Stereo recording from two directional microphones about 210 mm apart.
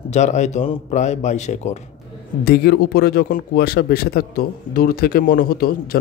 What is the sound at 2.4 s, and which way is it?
A man's voice, 50° left (ahead or behind).